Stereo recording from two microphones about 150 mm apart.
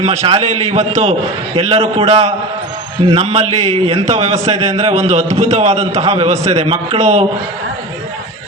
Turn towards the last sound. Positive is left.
turn(degrees=-50)  # may be behind; listen again after turning